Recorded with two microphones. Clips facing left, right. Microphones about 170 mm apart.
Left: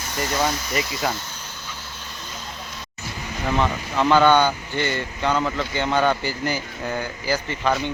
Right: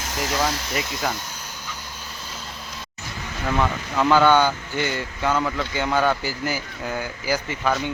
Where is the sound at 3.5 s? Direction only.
5° right (ahead or behind).